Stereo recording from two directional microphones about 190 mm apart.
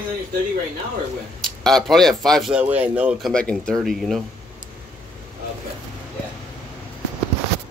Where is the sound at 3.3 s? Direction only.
5° left (ahead or behind).